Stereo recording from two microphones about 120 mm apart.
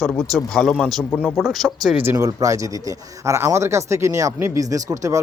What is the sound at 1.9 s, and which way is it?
Speech, 20° right (ahead or behind).